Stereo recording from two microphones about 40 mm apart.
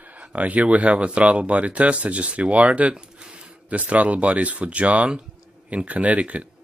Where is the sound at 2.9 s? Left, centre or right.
Right.